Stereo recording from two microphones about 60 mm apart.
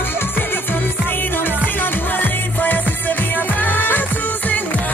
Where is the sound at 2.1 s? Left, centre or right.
Left.